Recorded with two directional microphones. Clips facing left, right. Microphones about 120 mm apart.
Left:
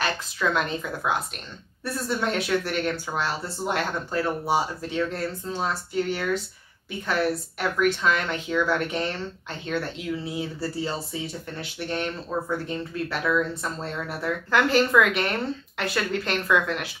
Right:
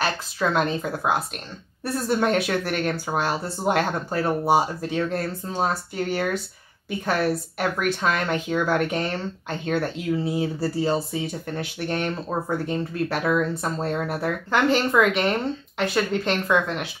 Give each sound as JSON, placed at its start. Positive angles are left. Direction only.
{"t": 0.0, "sound": "speech", "side_deg": -35}
{"t": 14.5, "sound": "speech", "side_deg": -25}